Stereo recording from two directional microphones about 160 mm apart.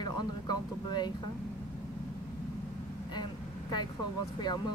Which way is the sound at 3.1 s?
25° left (ahead or behind).